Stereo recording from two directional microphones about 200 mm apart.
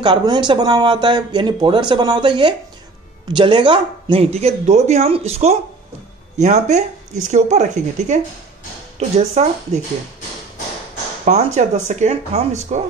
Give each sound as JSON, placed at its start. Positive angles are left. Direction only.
{"t": 0.0, "sound": "speech", "side_deg": -20}
{"t": 11.2, "sound": "speech", "side_deg": -35}